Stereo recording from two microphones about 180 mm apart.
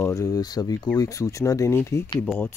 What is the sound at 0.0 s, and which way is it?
Speech, 15° left (ahead or behind).